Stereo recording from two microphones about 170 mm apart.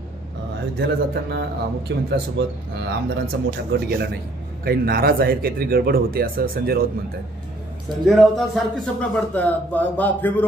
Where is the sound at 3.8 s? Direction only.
70° right (ahead or behind).